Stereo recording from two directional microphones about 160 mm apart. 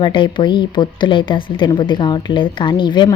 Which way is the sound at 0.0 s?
30° left (ahead or behind).